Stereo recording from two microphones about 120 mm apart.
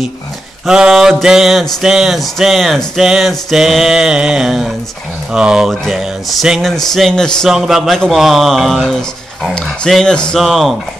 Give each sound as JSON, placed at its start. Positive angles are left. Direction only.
{"t": 0.7, "sound": "speech", "side_deg": -5}